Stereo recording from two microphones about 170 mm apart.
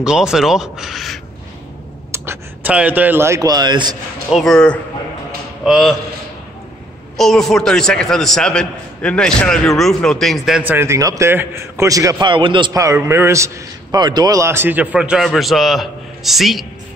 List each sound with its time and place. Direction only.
0.0 s a man's voice: 5° right (ahead or behind)
2.1 s a man's voice: 10° right (ahead or behind)
4.3 s a man's voice: centre (ahead or behind)
7.2 s a man's voice: centre (ahead or behind)
10.7 s a man's voice: 15° right (ahead or behind)